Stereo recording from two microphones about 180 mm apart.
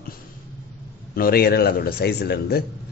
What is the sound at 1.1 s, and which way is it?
A man's voice, 55° left (ahead or behind).